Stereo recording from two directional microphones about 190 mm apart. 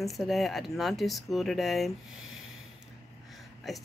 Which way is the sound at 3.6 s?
Centre (ahead or behind).